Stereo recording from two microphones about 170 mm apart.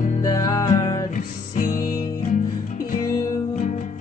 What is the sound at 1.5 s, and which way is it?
Music, 50° left (ahead or behind).